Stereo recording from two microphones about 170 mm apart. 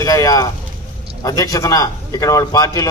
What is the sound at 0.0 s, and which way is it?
A man's voice, 20° left (ahead or behind).